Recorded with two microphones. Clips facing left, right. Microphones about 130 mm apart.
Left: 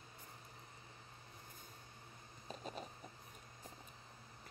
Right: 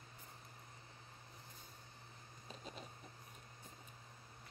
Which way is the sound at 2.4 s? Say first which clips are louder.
Left 5 dB; 45° left (ahead or behind).